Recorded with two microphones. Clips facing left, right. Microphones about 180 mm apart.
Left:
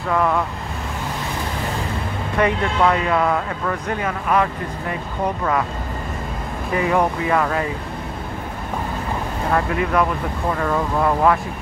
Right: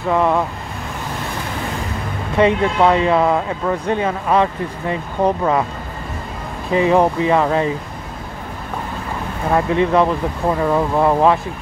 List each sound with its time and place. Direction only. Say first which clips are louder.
0.1 s speech: right 3 dB; 25° right (ahead or behind)
2.3 s speech: right 5 dB; 25° right (ahead or behind)
6.7 s speech: right 5 dB; 25° right (ahead or behind)
9.5 s speech: right 5 dB; 25° right (ahead or behind)